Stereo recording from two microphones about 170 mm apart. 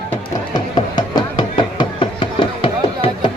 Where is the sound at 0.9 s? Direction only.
25° left (ahead or behind).